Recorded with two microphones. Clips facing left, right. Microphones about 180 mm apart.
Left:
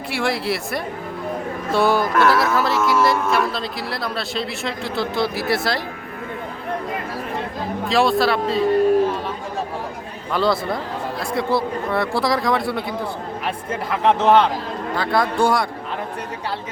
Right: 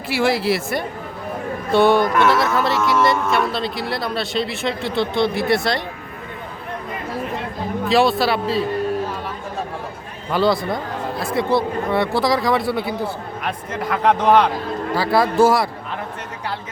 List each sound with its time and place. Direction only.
0.1 s speech: centre (ahead or behind)
7.9 s speech: centre (ahead or behind)
10.3 s speech: centre (ahead or behind)
13.9 s speech: 25° left (ahead or behind)
14.9 s speech: 5° right (ahead or behind)